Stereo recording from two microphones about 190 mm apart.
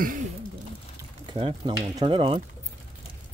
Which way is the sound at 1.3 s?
25° right (ahead or behind).